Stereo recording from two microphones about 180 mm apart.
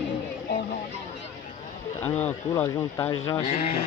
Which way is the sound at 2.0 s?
10° left (ahead or behind).